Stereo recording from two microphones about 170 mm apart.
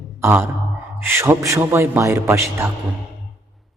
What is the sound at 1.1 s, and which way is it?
A man's voice, 15° right (ahead or behind).